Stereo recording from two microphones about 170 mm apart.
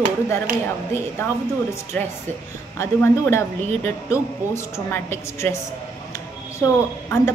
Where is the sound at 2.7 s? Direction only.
15° left (ahead or behind).